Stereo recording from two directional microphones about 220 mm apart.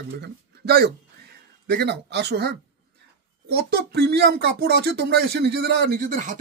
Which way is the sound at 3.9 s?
45° right (ahead or behind).